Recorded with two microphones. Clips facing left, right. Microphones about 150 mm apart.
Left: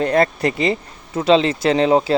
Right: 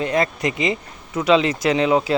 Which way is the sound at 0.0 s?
40° left (ahead or behind).